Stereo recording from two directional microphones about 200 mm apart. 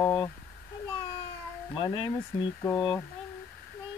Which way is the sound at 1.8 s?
20° left (ahead or behind).